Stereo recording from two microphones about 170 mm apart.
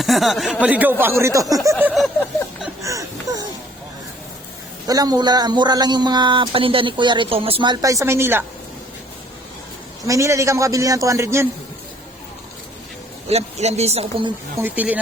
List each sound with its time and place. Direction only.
0.0 s speech: centre (ahead or behind); by 1.7 s 20° right (ahead or behind)
2.8 s a sound: 20° right (ahead or behind)
4.9 s speech: 20° right (ahead or behind)
10.1 s speech: 15° right (ahead or behind)
13.2 s a man's voice: 40° right (ahead or behind)
14.6 s speech: 10° right (ahead or behind)